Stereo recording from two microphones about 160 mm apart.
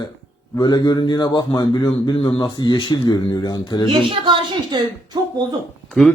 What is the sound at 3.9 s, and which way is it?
Speech, 30° right (ahead or behind).